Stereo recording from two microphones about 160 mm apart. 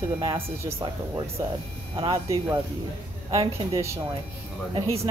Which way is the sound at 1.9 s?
25° right (ahead or behind).